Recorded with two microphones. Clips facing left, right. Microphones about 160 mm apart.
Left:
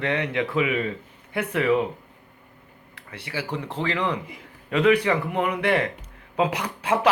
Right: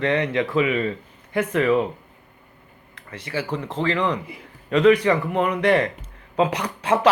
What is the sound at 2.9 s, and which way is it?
Speech, 10° left (ahead or behind).